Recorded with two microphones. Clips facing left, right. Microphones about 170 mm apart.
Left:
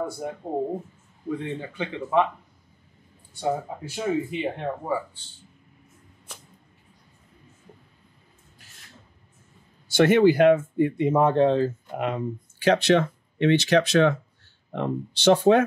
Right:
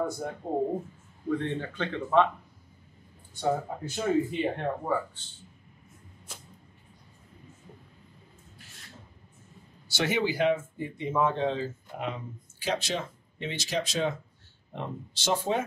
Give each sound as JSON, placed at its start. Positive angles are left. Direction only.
{"t": 0.2, "sound": "speech", "side_deg": 15}
{"t": 3.3, "sound": "speech", "side_deg": 10}
{"t": 9.8, "sound": "speech", "side_deg": 55}